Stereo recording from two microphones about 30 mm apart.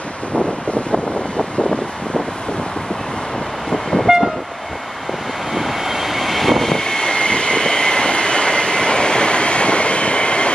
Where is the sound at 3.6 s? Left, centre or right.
Centre.